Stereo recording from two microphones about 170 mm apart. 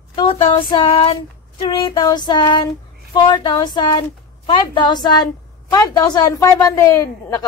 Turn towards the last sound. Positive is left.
turn(degrees=20)  # may be behind; listen again after turning